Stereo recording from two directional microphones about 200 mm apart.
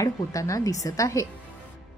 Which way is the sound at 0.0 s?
15° left (ahead or behind).